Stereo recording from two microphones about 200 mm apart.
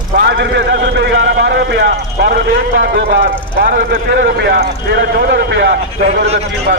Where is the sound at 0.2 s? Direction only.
55° right (ahead or behind).